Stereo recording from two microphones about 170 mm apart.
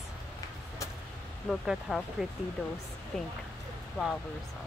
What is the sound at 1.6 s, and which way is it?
Speech, centre (ahead or behind).